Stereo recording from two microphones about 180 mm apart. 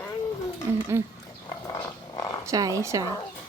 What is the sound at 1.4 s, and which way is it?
Dog, 20° left (ahead or behind).